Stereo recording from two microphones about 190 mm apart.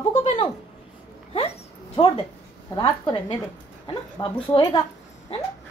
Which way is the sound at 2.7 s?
25° left (ahead or behind).